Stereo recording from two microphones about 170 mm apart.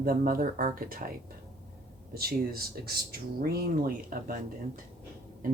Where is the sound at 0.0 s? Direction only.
60° right (ahead or behind).